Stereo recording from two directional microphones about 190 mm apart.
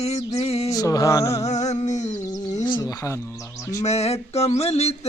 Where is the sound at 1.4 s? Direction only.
35° left (ahead or behind).